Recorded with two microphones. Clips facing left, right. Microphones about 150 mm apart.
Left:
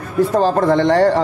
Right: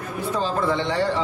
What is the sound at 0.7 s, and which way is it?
Speech, 75° left (ahead or behind).